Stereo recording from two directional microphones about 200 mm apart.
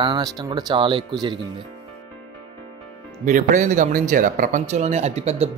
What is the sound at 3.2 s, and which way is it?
A man's voice, 40° right (ahead or behind).